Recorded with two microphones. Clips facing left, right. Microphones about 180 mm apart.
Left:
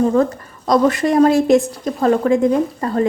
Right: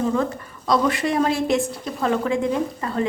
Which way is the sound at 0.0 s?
45° left (ahead or behind).